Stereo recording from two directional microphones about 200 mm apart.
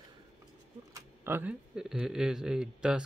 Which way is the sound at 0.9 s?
10° right (ahead or behind).